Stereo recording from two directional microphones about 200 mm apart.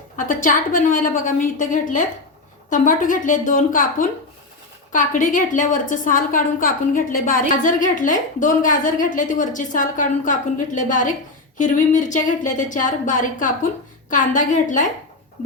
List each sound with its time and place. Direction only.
0.2 s a woman's voice: 40° left (ahead or behind)